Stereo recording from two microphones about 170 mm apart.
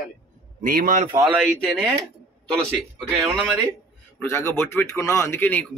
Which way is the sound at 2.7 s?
5° right (ahead or behind).